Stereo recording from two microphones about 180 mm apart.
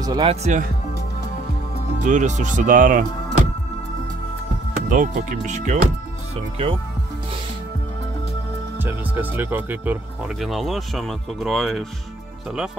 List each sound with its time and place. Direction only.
0.0 s speech: 20° right (ahead or behind)
0.3 s speech: 40° right (ahead or behind)
2.0 s speech: 45° right (ahead or behind)
4.8 s speech: 50° right (ahead or behind)
8.7 s speech: 10° right (ahead or behind)